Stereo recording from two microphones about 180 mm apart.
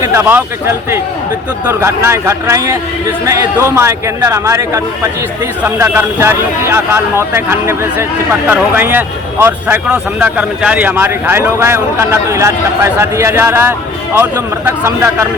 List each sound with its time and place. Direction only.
0.0 s speech: 15° right (ahead or behind)